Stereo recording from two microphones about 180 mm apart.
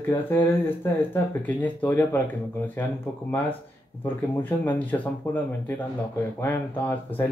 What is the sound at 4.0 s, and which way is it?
Speech, 10° left (ahead or behind).